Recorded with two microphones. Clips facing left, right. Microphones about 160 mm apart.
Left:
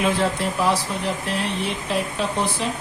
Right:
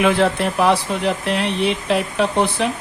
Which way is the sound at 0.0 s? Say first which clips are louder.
Right 5 dB; 70° right (ahead or behind).